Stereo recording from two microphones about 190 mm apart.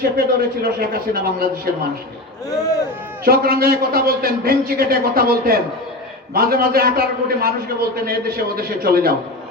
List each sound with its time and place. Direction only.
0.0 s a man's voice: 55° right (ahead or behind)
3.2 s a man's voice: 50° right (ahead or behind)